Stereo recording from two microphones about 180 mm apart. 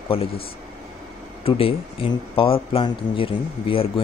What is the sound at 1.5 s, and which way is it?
Speech, 30° left (ahead or behind).